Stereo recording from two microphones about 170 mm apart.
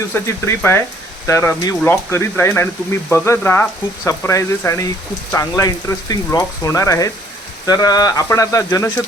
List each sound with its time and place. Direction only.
0.1 s speech: 10° left (ahead or behind)